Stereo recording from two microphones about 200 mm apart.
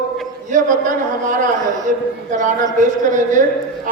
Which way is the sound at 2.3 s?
40° right (ahead or behind).